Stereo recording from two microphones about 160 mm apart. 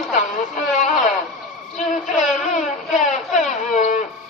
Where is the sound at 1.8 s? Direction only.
50° left (ahead or behind).